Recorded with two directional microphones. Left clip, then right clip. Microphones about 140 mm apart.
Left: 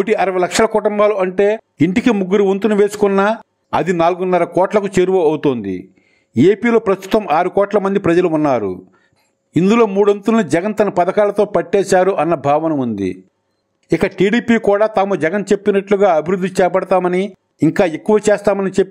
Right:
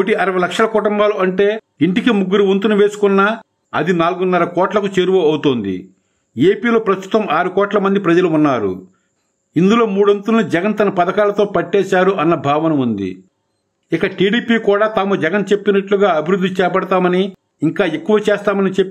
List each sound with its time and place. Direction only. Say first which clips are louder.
0.0 s a man's voice: even; 40° left (ahead or behind)